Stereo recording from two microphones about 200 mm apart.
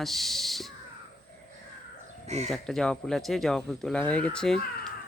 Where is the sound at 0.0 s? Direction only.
Centre (ahead or behind).